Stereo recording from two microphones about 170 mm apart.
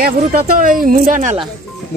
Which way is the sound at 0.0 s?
55° right (ahead or behind).